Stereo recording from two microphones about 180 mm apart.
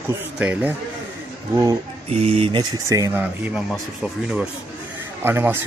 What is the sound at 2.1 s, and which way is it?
A man's voice, 35° right (ahead or behind).